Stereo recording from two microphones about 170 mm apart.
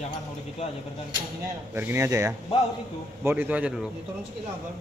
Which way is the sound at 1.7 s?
15° right (ahead or behind).